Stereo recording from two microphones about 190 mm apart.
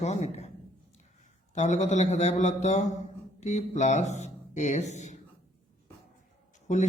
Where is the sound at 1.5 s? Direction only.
40° left (ahead or behind).